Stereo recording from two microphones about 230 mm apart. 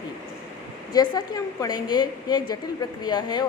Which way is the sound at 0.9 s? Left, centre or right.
Centre.